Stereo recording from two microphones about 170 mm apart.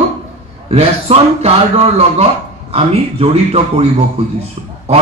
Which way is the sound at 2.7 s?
35° right (ahead or behind).